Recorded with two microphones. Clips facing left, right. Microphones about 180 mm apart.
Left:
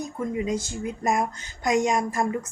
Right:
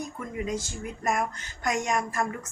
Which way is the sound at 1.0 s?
20° left (ahead or behind).